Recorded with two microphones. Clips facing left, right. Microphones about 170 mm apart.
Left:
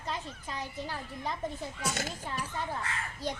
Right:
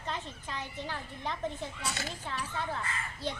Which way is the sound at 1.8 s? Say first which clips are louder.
Left 6 dB; 45° left (ahead or behind).